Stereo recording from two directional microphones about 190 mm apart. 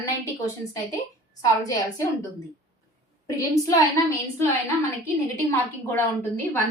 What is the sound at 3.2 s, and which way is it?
Speech, 20° left (ahead or behind).